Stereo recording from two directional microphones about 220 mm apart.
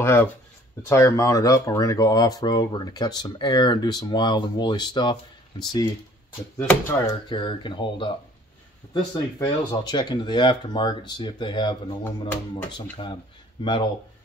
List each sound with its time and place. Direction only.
0.0 s speech: 10° left (ahead or behind)